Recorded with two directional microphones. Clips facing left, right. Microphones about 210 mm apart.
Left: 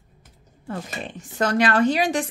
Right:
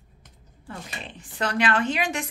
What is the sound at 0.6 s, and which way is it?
A woman's voice, 45° left (ahead or behind).